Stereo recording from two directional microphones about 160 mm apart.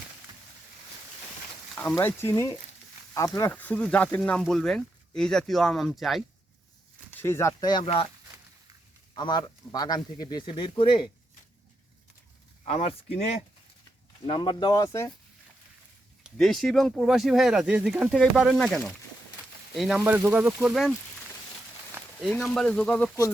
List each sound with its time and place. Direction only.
1.7 s speech: 10° left (ahead or behind)
7.1 s speech: 15° left (ahead or behind)
9.1 s speech: 30° left (ahead or behind)
12.6 s speech: 35° left (ahead or behind); by 15.1 s 20° left (ahead or behind)
16.2 s speech: centre (ahead or behind)
20.1 s speech: 10° right (ahead or behind)
22.2 s speech: centre (ahead or behind)